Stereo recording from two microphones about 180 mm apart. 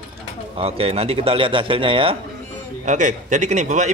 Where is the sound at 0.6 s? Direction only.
35° right (ahead or behind).